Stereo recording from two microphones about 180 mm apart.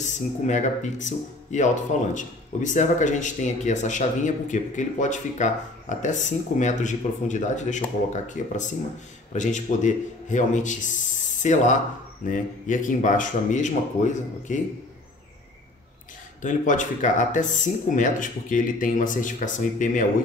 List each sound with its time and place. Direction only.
0.0 s speech: 40° left (ahead or behind)
16.3 s speech: 45° left (ahead or behind)